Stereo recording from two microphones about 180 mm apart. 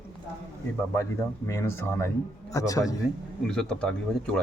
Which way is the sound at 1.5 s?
15° left (ahead or behind).